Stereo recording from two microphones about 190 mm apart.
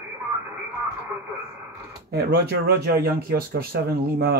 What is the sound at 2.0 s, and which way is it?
Speech, 55° right (ahead or behind).